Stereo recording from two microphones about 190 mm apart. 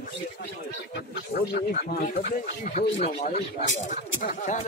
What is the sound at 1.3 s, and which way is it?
Speech, 50° left (ahead or behind).